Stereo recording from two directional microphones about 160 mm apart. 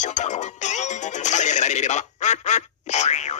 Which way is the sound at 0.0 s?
50° left (ahead or behind).